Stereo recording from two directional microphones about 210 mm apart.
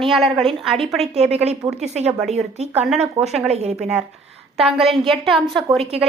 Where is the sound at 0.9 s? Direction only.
30° right (ahead or behind).